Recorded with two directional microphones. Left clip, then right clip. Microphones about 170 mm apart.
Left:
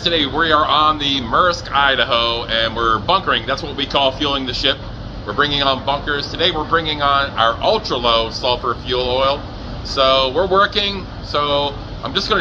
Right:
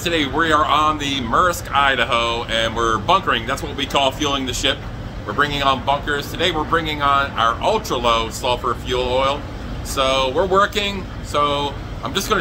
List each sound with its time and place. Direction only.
0.0 s speech: 25° right (ahead or behind)